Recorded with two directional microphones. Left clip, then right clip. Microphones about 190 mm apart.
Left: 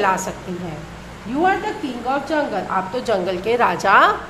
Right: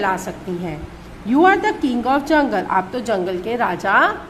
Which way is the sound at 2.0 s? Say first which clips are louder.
Right 4 dB; 15° right (ahead or behind).